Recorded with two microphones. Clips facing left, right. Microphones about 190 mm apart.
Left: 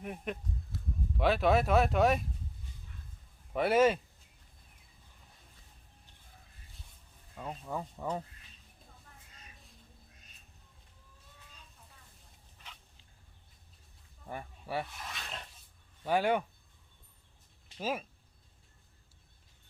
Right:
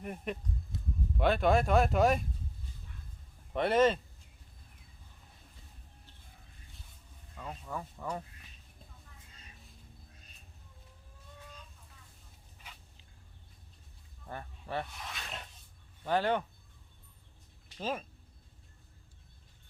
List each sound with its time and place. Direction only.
0.0 s speech: centre (ahead or behind)
0.7 s a sound: 20° right (ahead or behind)
1.1 s speech: centre (ahead or behind)
3.5 s speech: 5° left (ahead or behind)
7.3 s speech: 15° left (ahead or behind)
14.3 s speech: 10° left (ahead or behind)
16.0 s speech: 10° left (ahead or behind)
17.7 s speech: 10° left (ahead or behind)